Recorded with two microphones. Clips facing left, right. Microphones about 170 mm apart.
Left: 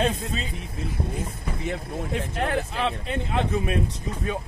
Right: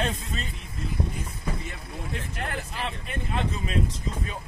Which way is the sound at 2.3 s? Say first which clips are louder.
Left 8 dB; 65° left (ahead or behind).